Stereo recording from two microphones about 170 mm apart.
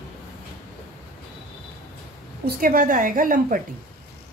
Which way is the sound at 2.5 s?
55° right (ahead or behind).